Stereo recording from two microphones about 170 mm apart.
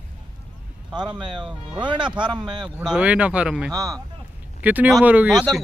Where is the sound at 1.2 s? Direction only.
30° right (ahead or behind).